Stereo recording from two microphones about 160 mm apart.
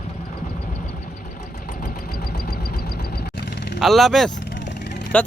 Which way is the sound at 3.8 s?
Centre (ahead or behind).